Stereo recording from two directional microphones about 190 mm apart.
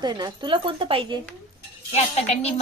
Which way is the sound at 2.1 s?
35° left (ahead or behind).